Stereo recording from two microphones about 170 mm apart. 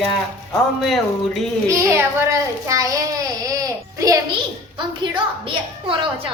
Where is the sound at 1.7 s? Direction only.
15° right (ahead or behind).